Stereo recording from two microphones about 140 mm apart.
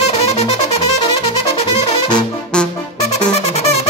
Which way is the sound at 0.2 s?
50° left (ahead or behind).